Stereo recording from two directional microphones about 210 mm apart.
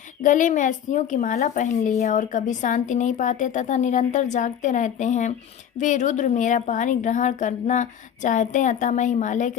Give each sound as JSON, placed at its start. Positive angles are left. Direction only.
{"t": 0.2, "sound": "a woman's voice", "side_deg": 35}